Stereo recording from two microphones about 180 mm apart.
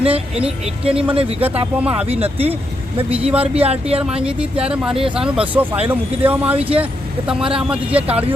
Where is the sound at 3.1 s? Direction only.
5° right (ahead or behind).